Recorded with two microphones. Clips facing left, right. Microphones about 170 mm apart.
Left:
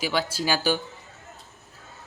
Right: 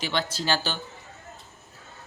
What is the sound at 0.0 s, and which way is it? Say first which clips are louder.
Speech: left 2 dB; 5° left (ahead or behind).